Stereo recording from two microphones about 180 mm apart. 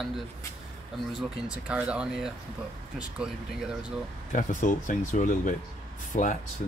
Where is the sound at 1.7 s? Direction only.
5° right (ahead or behind).